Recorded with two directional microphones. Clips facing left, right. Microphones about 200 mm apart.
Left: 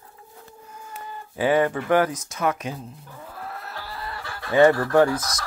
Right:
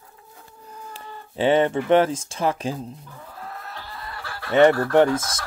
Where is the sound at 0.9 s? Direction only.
25° right (ahead or behind).